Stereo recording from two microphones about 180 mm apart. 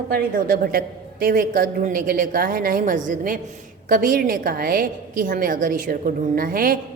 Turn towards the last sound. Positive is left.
turn(degrees=-50)  # may be behind; listen again after turning